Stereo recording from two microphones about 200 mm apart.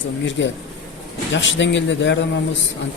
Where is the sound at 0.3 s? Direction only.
65° left (ahead or behind).